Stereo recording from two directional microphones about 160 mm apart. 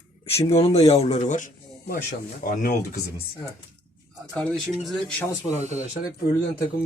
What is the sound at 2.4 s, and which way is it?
Speech, 60° left (ahead or behind).